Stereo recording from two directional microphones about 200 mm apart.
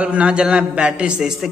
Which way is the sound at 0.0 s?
5° right (ahead or behind).